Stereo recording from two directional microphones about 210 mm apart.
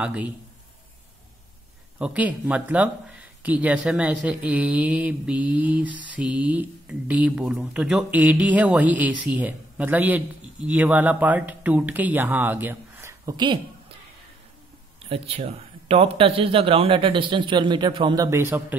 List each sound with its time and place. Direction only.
0.0 s speech: 5° right (ahead or behind)
2.0 s speech: 5° right (ahead or behind)
15.0 s speech: 25° right (ahead or behind); by 18.8 s 10° right (ahead or behind)